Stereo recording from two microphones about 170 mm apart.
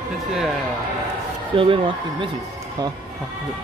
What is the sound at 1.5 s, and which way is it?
Speech, 30° right (ahead or behind).